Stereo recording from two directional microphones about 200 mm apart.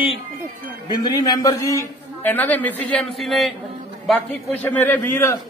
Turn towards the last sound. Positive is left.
turn(degrees=15)  # may be behind; listen again after turning